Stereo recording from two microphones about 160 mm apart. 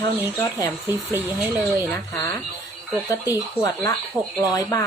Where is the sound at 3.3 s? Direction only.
25° left (ahead or behind).